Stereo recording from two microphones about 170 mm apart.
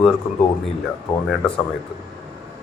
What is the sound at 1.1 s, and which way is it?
Speech, 25° left (ahead or behind).